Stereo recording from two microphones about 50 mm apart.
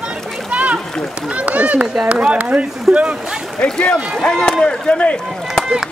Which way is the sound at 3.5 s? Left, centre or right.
Centre.